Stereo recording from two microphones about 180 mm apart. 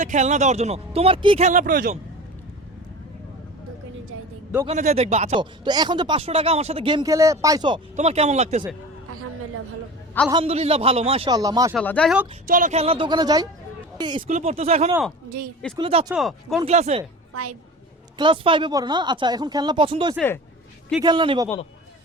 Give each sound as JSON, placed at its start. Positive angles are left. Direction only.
{"t": 0.0, "sound": "speech", "side_deg": -45}
{"t": 4.6, "sound": "speech", "side_deg": -40}
{"t": 5.4, "sound": "speech", "side_deg": -25}
{"t": 7.9, "sound": "speech", "side_deg": -35}
{"t": 10.4, "sound": "speech", "side_deg": -35}
{"t": 11.3, "sound": "speech", "side_deg": -20}
{"t": 11.8, "sound": "speech", "side_deg": 5}
{"t": 12.5, "sound": "speech", "side_deg": -45}
{"t": 14.3, "sound": "speech", "side_deg": -35}
{"t": 16.1, "sound": "speech", "side_deg": 0}
{"t": 16.6, "sound": "speech", "side_deg": -35}
{"t": 18.2, "sound": "speech", "side_deg": -25}
{"t": 20.1, "sound": "speech", "side_deg": 10}
{"t": 21.0, "sound": "speech", "side_deg": -25}